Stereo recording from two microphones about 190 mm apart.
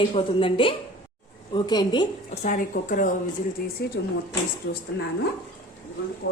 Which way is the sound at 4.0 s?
65° left (ahead or behind).